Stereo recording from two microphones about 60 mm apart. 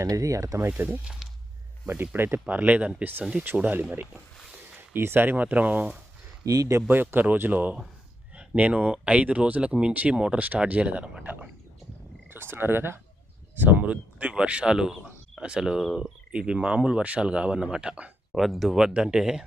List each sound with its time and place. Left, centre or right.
0.1 s speech: right
0.8 s speech: right
2.5 s speech: right
6.4 s speech: right
6.7 s speech: right; by 11.3 s centre
12.3 s speech: right; by 18.1 s centre
18.3 s speech: centre